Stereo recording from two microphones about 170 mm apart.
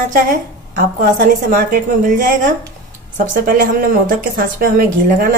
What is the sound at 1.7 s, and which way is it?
A woman's voice, 50° right (ahead or behind).